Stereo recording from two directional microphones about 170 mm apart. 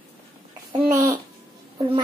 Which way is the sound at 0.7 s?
25° right (ahead or behind).